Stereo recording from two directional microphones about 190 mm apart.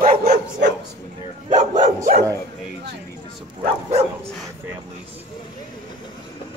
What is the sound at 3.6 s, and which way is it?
Speech, 35° right (ahead or behind).